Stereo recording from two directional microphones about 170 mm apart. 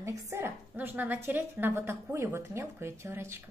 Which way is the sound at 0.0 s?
15° right (ahead or behind).